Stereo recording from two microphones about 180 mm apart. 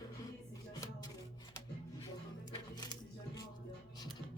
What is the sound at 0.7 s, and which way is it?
Chopping, 20° left (ahead or behind).